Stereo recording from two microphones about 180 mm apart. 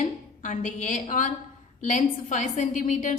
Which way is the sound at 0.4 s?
45° left (ahead or behind).